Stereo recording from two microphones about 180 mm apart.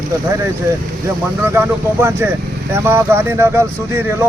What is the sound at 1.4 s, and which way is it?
Speech, 15° right (ahead or behind).